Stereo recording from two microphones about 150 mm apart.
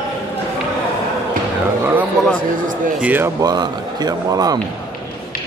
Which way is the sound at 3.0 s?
10° right (ahead or behind).